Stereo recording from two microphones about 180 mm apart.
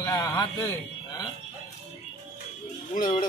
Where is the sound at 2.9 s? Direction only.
50° left (ahead or behind).